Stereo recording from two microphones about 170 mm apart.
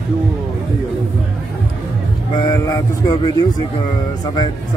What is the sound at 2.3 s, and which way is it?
Speech, 25° left (ahead or behind).